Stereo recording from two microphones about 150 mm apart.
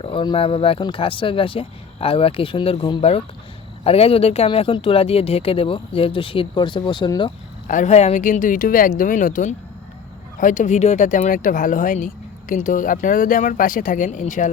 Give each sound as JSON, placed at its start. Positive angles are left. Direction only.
{"t": 0.0, "sound": "speech", "side_deg": 35}
{"t": 7.7, "sound": "speech", "side_deg": 55}